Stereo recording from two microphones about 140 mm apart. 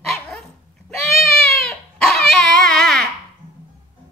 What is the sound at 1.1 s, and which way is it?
Dog, centre (ahead or behind).